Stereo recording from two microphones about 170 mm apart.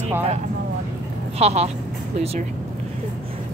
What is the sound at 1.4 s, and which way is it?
Speech, 40° right (ahead or behind).